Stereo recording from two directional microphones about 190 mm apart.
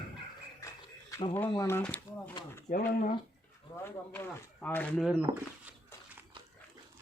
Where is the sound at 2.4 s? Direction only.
25° left (ahead or behind).